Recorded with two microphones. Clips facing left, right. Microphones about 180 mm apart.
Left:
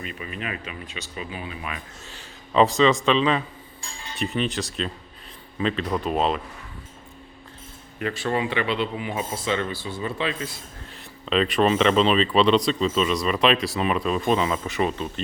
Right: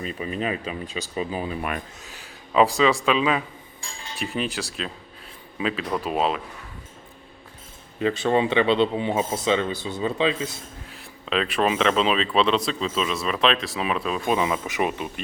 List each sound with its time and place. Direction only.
0.0 s speech: 35° right (ahead or behind)
2.5 s a man's voice: 5° right (ahead or behind)
8.0 s speech: 20° right (ahead or behind)
10.8 s speech: 5° right (ahead or behind)